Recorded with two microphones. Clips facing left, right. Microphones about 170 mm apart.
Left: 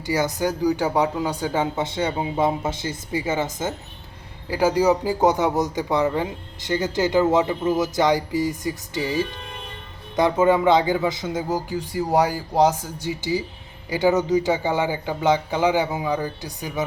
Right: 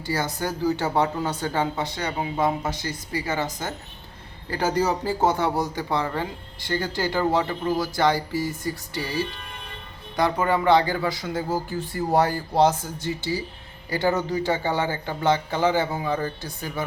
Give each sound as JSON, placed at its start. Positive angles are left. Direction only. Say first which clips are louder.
{"t": 0.0, "sound": "speech", "louder": "left 5 dB", "side_deg": 15}
{"t": 1.8, "sound": "speech", "louder": "left 4 dB", "side_deg": 25}
{"t": 4.4, "sound": "speech", "louder": "left 5 dB", "side_deg": 10}